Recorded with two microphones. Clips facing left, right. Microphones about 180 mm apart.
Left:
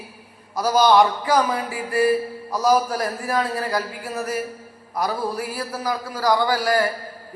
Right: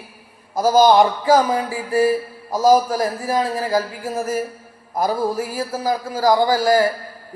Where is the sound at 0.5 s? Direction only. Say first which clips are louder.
Right 3 dB; 45° right (ahead or behind).